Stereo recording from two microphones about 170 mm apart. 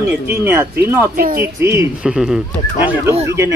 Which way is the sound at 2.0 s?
5° right (ahead or behind).